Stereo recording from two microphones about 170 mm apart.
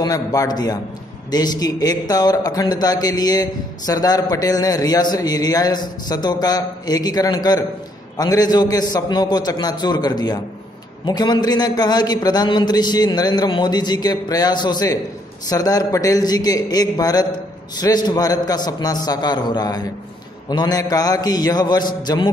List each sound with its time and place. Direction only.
0.0 s speech: 20° left (ahead or behind)